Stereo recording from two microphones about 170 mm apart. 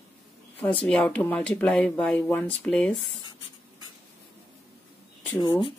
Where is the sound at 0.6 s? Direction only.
5° left (ahead or behind).